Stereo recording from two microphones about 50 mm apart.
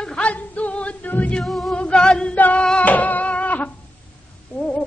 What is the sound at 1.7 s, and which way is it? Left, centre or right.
Music, left.